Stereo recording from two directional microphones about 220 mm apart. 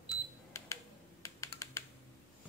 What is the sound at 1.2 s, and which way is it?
Computer keyboard, 15° left (ahead or behind).